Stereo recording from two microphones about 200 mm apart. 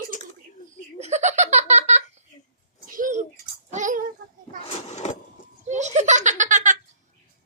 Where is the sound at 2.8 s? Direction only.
40° right (ahead or behind).